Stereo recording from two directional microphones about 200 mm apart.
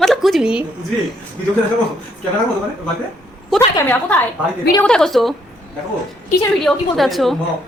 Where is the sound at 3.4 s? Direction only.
5° left (ahead or behind).